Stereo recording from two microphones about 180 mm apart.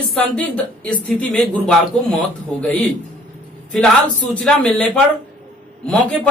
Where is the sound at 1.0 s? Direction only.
5° left (ahead or behind).